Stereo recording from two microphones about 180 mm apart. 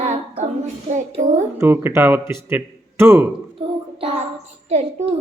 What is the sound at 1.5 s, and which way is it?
Speech, 10° right (ahead or behind).